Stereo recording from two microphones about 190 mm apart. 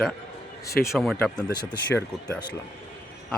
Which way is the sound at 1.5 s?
25° left (ahead or behind).